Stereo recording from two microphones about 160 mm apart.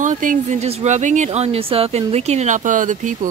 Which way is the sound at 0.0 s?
50° right (ahead or behind).